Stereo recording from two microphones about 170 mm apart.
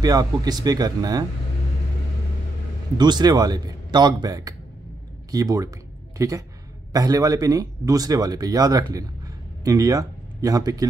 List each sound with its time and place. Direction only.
0.0 s speech: 20° right (ahead or behind)
3.0 s speech: 25° right (ahead or behind)